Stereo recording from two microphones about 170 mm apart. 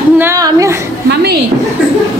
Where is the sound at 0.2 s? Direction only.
20° right (ahead or behind).